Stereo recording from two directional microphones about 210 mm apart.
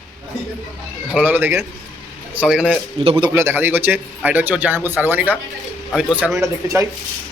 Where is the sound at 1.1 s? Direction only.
10° right (ahead or behind).